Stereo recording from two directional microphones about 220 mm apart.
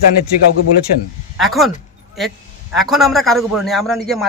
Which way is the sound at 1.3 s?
Centre (ahead or behind).